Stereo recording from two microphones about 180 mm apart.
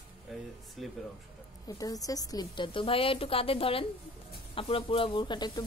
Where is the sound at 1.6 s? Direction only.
20° left (ahead or behind).